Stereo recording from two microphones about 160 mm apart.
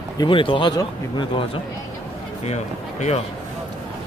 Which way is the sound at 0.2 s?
30° left (ahead or behind).